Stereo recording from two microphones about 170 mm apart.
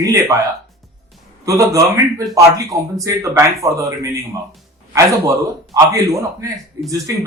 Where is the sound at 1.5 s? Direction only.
20° right (ahead or behind).